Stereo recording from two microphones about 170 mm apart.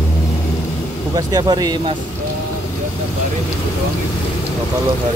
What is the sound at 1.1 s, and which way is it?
Speech, 25° right (ahead or behind).